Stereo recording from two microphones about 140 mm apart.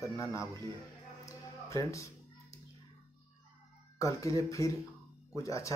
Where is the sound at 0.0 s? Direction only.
20° left (ahead or behind).